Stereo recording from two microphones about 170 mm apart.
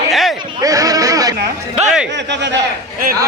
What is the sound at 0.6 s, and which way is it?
Speech, 20° right (ahead or behind).